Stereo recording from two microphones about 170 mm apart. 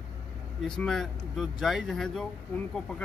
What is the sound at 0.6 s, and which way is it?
Speech, 5° left (ahead or behind).